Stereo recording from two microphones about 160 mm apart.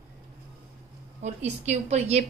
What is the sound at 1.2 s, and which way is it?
A woman's voice, 45° right (ahead or behind).